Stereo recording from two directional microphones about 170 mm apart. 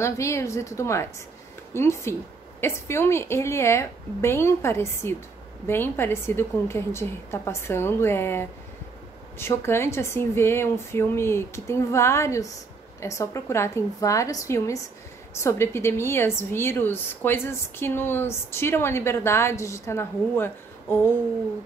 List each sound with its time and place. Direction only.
0.0 s a woman's voice: 15° left (ahead or behind)